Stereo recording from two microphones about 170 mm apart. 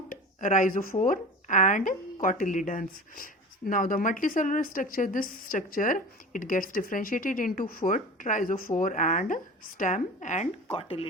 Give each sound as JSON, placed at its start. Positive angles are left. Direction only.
{"t": 0.1, "sound": "a woman's voice", "side_deg": 50}